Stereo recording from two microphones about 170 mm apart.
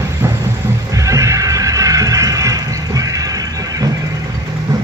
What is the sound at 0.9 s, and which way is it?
Music, 20° right (ahead or behind).